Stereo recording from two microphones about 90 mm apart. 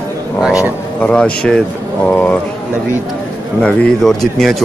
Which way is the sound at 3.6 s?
10° left (ahead or behind).